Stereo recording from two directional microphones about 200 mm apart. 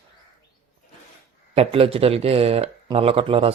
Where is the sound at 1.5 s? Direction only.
30° right (ahead or behind).